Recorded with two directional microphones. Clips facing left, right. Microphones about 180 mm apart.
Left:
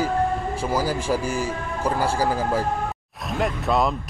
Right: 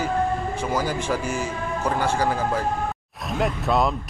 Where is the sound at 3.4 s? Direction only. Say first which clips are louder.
Even; centre (ahead or behind).